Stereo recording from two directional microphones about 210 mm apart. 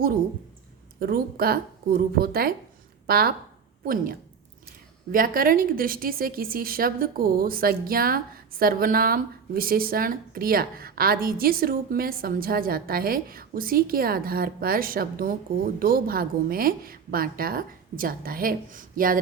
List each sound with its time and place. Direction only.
0.9 s a woman's voice: 45° right (ahead or behind)